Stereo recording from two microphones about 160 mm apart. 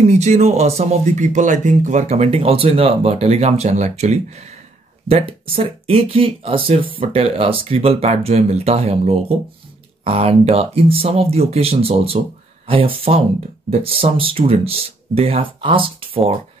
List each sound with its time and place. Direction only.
0.0 s speech: 45° right (ahead or behind)